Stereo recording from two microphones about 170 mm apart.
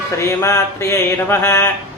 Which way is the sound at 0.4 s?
15° left (ahead or behind).